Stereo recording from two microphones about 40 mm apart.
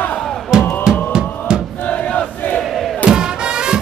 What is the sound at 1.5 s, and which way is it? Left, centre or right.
Crowd, right.